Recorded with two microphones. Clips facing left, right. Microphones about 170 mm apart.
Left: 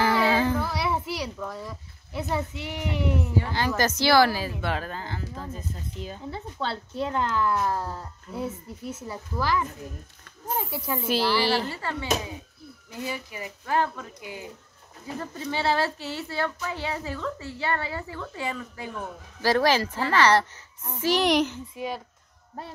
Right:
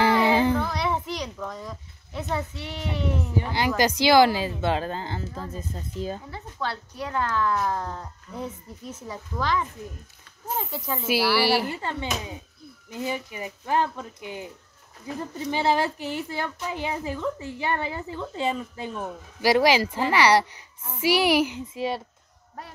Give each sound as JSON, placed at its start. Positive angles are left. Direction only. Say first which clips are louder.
{"t": 0.0, "sound": "child singing", "louder": "right 2 dB", "side_deg": -20}
{"t": 0.6, "sound": "a sound", "louder": "right 1 dB", "side_deg": 5}
{"t": 2.1, "sound": "speech", "louder": "left 1 dB", "side_deg": 10}
{"t": 3.3, "sound": "speech", "louder": "right 4 dB", "side_deg": -15}
{"t": 6.3, "sound": "speech", "louder": "left 1 dB", "side_deg": 25}
{"t": 10.7, "sound": "speech", "louder": "even", "side_deg": 10}
{"t": 11.1, "sound": "speech", "louder": "right 2 dB", "side_deg": -10}